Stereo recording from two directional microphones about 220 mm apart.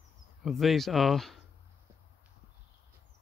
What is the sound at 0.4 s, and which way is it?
Speech, centre (ahead or behind).